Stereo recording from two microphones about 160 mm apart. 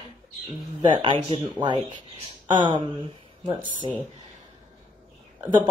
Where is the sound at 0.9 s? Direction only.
30° right (ahead or behind).